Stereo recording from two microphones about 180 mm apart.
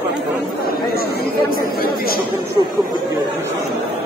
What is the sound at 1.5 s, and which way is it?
Speech, 55° left (ahead or behind).